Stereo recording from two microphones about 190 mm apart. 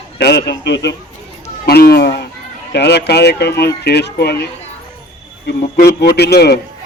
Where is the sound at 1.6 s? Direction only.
55° left (ahead or behind).